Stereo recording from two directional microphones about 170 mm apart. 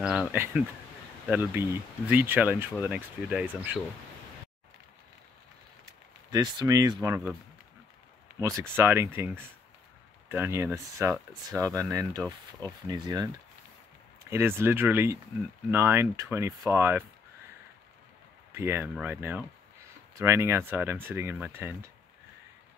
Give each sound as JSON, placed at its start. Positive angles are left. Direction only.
{"t": 0.0, "sound": "speech", "side_deg": -5}
{"t": 6.3, "sound": "speech", "side_deg": -20}
{"t": 8.4, "sound": "speech", "side_deg": -15}
{"t": 14.3, "sound": "speech", "side_deg": -15}
{"t": 18.5, "sound": "speech", "side_deg": -15}